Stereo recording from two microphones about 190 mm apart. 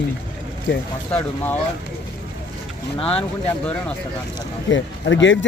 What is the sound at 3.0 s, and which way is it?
Speech, 30° left (ahead or behind).